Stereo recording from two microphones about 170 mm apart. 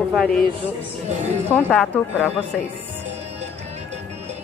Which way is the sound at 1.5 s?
5° left (ahead or behind).